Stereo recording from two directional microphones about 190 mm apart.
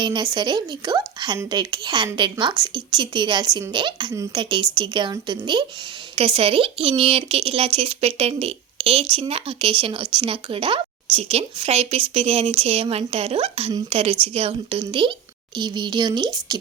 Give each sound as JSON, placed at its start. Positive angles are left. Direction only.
{"t": 0.0, "sound": "speech", "side_deg": -25}